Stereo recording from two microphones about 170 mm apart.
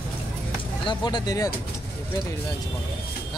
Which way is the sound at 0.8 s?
25° left (ahead or behind).